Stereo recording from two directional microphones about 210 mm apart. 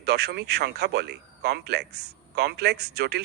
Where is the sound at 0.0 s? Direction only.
50° right (ahead or behind).